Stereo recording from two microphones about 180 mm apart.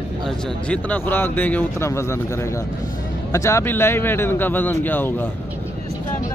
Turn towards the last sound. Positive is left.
turn(degrees=10)  # may be behind; listen again after turning